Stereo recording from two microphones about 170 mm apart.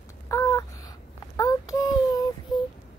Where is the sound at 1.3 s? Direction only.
20° left (ahead or behind).